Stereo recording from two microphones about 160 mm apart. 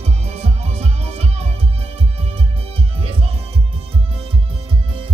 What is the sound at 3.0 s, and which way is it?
Music, 35° right (ahead or behind).